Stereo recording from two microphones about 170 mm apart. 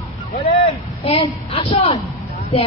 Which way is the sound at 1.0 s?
30° left (ahead or behind).